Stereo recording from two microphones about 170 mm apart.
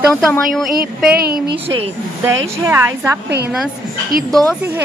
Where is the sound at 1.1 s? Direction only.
65° right (ahead or behind).